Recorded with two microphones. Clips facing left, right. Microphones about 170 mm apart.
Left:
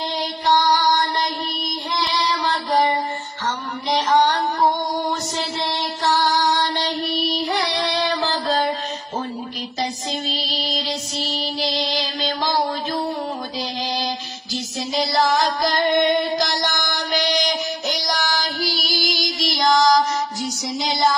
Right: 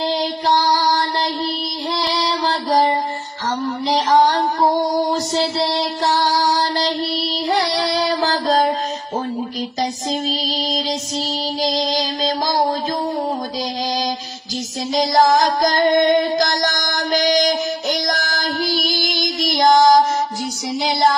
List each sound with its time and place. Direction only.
2.1 s mantra: 30° right (ahead or behind)
4.1 s music: 30° right (ahead or behind)
5.3 s child singing: 35° right (ahead or behind)
11.6 s music: 40° right (ahead or behind)
15.0 s music: 45° right (ahead or behind)
20.7 s child singing: 60° right (ahead or behind)